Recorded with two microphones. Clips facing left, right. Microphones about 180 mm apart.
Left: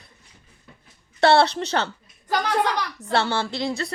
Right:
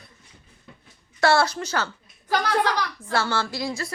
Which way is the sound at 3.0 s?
15° left (ahead or behind).